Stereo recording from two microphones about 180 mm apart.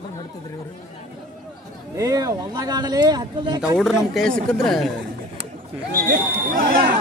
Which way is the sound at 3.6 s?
Centre (ahead or behind).